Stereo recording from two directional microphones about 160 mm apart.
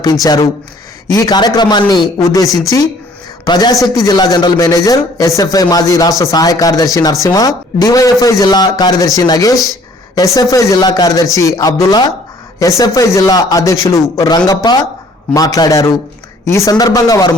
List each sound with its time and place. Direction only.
0.0 s a man's voice: 25° left (ahead or behind)